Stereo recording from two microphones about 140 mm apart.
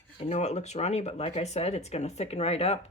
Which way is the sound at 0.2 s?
50° left (ahead or behind).